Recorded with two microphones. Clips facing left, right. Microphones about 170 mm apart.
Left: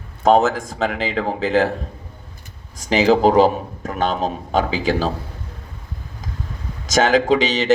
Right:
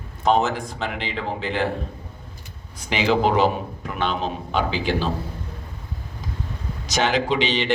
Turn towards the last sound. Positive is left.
turn(degrees=45)  # may be behind; listen again after turning